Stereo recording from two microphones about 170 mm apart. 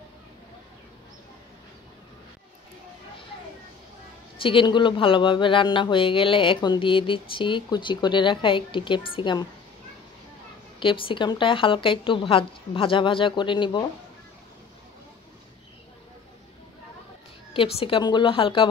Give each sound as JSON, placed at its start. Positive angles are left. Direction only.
{"t": 4.4, "sound": "speech", "side_deg": 30}
{"t": 10.8, "sound": "speech", "side_deg": 30}
{"t": 17.6, "sound": "speech", "side_deg": 35}